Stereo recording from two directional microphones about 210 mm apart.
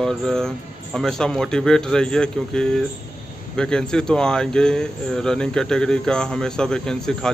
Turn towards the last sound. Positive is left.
turn(degrees=5)  # may be behind; listen again after turning